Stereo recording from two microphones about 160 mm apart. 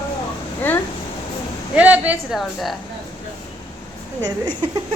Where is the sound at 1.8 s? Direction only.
10° right (ahead or behind).